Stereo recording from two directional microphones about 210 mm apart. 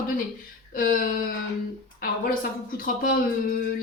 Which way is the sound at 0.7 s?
40° left (ahead or behind).